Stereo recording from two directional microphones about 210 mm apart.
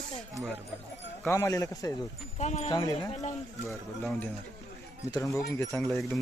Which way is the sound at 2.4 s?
35° left (ahead or behind).